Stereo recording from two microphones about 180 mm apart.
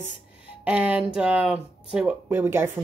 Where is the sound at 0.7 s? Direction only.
10° right (ahead or behind).